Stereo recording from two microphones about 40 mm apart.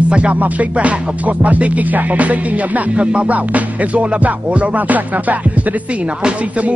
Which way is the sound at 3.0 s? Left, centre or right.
Right.